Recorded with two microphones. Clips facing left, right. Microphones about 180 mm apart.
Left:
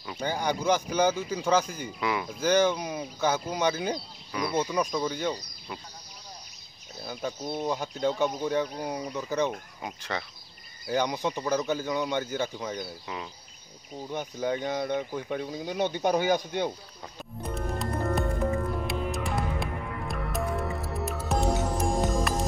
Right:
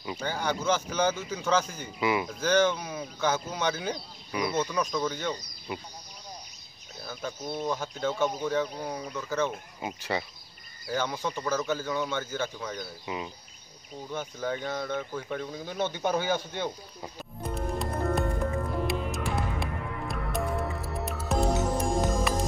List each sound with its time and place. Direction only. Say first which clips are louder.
0.2 s speech: left 3 dB; 15° left (ahead or behind)
2.0 s speech: right 3 dB; 5° right (ahead or behind)
2.4 s speech: left 2 dB; 10° left (ahead or behind)
7.1 s speech: left 2 dB; 15° left (ahead or behind)
9.8 s speech: right 3 dB; 5° right (ahead or behind)
11.2 s speech: left 2 dB; 15° left (ahead or behind)
13.0 s speech: right 2 dB; 10° right (ahead or behind)
14.1 s speech: left 3 dB; 15° left (ahead or behind)
17.4 s music: even; centre (ahead or behind)